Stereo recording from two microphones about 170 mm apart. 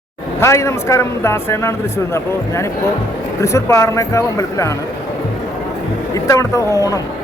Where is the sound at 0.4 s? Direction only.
15° left (ahead or behind).